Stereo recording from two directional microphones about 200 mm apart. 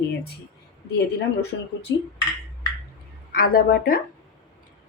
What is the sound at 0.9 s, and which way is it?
Speech, 55° left (ahead or behind).